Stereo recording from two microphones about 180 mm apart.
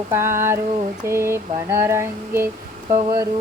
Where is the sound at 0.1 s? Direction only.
15° right (ahead or behind).